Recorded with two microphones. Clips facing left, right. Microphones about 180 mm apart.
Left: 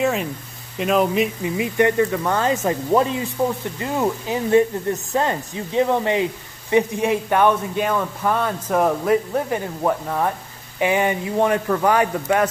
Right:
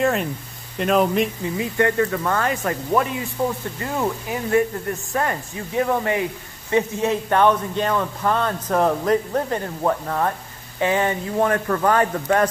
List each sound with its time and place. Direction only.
0.0 s speech: centre (ahead or behind)
1.4 s speech: 20° left (ahead or behind)